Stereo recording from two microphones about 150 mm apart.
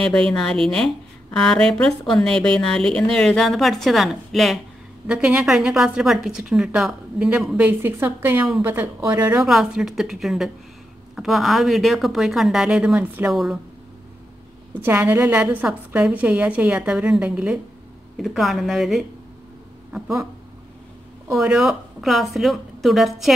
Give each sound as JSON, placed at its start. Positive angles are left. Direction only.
{"t": 0.0, "sound": "a woman's voice", "side_deg": 5}
{"t": 9.5, "sound": "a woman's voice", "side_deg": 0}
{"t": 14.7, "sound": "a woman's voice", "side_deg": -15}
{"t": 21.4, "sound": "a woman's voice", "side_deg": -5}